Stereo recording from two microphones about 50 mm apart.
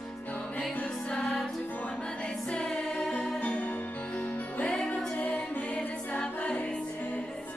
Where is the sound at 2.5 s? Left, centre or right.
Centre.